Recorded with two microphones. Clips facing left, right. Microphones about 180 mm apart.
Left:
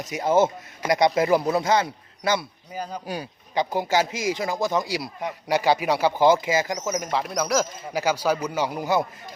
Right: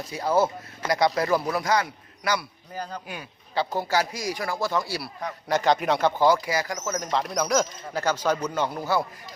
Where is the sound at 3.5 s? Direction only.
15° left (ahead or behind).